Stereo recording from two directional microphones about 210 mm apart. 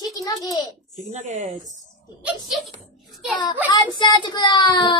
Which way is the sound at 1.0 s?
35° right (ahead or behind).